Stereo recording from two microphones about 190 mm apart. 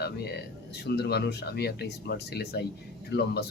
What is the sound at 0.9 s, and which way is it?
Speech, 60° left (ahead or behind).